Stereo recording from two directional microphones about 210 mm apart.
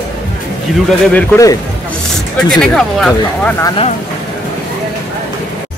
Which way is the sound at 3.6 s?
25° left (ahead or behind).